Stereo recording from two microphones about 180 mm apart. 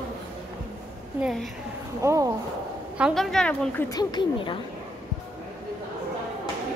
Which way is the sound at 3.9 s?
25° left (ahead or behind).